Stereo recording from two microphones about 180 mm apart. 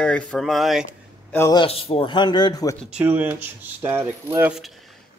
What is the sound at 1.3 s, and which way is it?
Speech, 15° left (ahead or behind).